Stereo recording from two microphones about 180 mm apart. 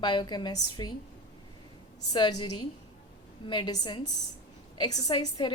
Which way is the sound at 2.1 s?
25° left (ahead or behind).